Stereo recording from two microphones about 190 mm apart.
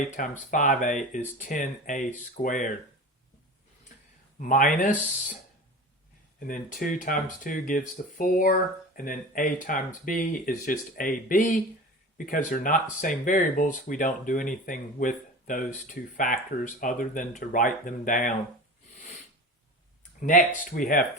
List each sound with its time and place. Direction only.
0.2 s speech: 45° left (ahead or behind)
4.4 s speech: 45° left (ahead or behind)
6.4 s speech: 45° left (ahead or behind)
20.1 s speech: 45° left (ahead or behind)